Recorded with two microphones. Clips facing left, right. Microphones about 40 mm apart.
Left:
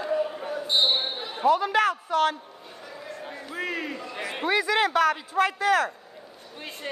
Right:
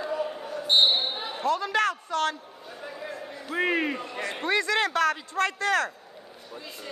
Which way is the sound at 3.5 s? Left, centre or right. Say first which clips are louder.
Right 6 dB; right.